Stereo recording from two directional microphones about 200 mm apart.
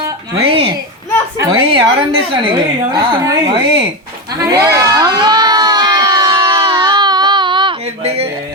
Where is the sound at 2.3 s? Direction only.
25° right (ahead or behind).